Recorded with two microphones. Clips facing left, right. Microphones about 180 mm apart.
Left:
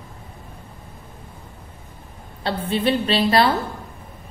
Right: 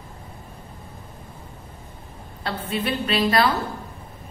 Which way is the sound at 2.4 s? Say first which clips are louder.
Left 5 dB; 30° left (ahead or behind).